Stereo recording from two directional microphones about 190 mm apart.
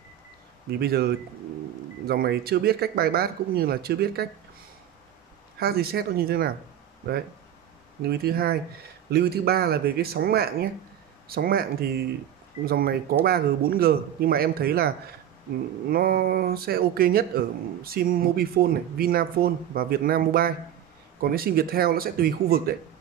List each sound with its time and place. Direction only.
0.7 s speech: 55° right (ahead or behind)
5.6 s speech: 55° right (ahead or behind)
8.0 s speech: 55° right (ahead or behind)